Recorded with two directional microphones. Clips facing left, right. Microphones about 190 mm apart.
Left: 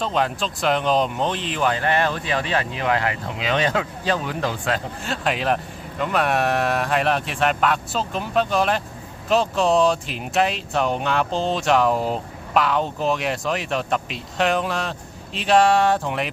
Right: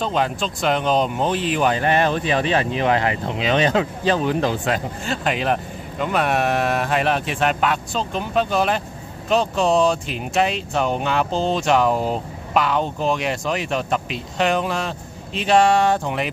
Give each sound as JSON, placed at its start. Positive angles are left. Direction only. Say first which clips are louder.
{"t": 0.0, "sound": "speech", "louder": "right 1 dB", "side_deg": 0}
{"t": 1.6, "sound": "speech", "louder": "right 1 dB", "side_deg": -15}
{"t": 5.0, "sound": "speech", "louder": "right 1 dB", "side_deg": 0}